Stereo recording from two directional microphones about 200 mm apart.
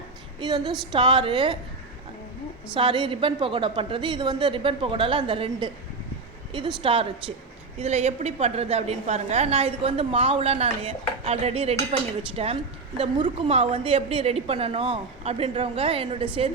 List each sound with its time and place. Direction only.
0.3 s a woman's voice: 20° right (ahead or behind)
2.7 s a woman's voice: 25° right (ahead or behind)
6.8 s a woman's voice: 25° right (ahead or behind)